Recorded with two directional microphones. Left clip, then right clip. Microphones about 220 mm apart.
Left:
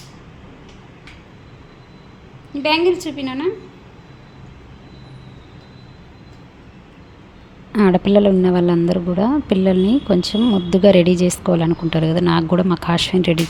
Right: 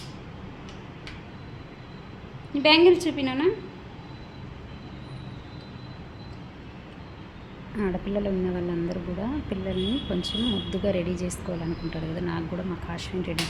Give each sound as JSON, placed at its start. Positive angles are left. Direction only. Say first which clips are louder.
{"t": 2.6, "sound": "a woman's voice", "louder": "left 1 dB", "side_deg": 5}
{"t": 7.8, "sound": "a woman's voice", "louder": "left 15 dB", "side_deg": 40}